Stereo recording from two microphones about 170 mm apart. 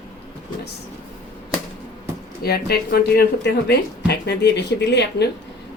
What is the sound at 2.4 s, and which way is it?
A woman's voice, 65° left (ahead or behind).